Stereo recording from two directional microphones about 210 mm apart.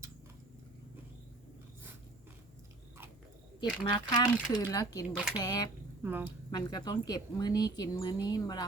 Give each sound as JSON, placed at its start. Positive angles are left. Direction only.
{"t": 3.6, "sound": "a woman's voice", "side_deg": 20}
{"t": 5.1, "sound": "speech", "side_deg": -5}
{"t": 5.4, "sound": "a woman's voice", "side_deg": 20}
{"t": 6.0, "sound": "a woman's voice", "side_deg": -10}
{"t": 6.5, "sound": "a woman's voice", "side_deg": 20}